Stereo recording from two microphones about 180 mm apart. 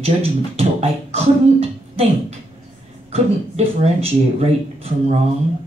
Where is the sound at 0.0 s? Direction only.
35° right (ahead or behind).